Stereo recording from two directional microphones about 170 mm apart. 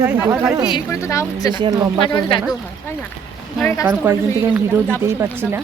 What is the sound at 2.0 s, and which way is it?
Speech, 30° left (ahead or behind).